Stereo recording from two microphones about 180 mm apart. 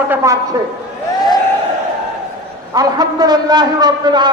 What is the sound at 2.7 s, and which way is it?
A man's voice, 20° right (ahead or behind).